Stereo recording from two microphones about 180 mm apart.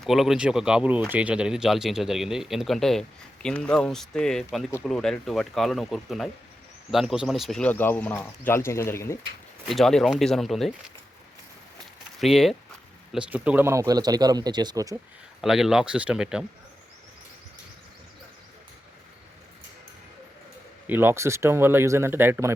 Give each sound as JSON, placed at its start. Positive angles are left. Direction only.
{"t": 0.0, "sound": "speech", "side_deg": 0}
{"t": 9.6, "sound": "speech", "side_deg": 0}
{"t": 12.2, "sound": "speech", "side_deg": 0}
{"t": 15.4, "sound": "speech", "side_deg": 0}
{"t": 20.8, "sound": "speech", "side_deg": -10}